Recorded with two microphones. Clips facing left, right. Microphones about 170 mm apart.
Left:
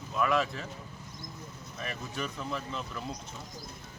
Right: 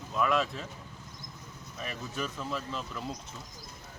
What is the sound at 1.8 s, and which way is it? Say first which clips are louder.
Speech: even; centre (ahead or behind).